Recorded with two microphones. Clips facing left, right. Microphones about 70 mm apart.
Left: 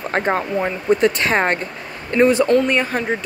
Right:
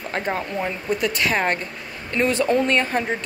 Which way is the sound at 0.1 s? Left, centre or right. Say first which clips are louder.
Left 6 dB; left.